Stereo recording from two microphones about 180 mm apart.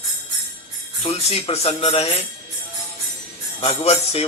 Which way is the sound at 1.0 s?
30° left (ahead or behind).